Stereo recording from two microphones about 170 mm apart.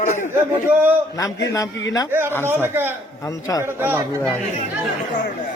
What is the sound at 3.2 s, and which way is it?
Speech, 20° left (ahead or behind).